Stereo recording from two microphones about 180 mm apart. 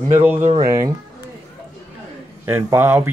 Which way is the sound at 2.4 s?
10° right (ahead or behind).